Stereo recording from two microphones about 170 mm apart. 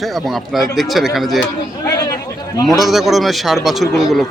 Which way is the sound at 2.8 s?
Centre (ahead or behind).